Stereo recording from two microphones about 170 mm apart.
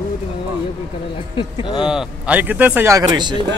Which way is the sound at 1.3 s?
30° left (ahead or behind).